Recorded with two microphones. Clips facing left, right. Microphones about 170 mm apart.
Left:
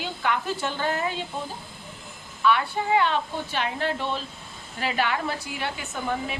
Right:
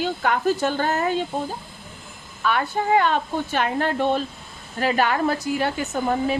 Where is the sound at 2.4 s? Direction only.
45° right (ahead or behind).